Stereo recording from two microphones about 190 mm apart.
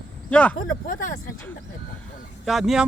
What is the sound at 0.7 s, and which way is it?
Speech, 45° left (ahead or behind).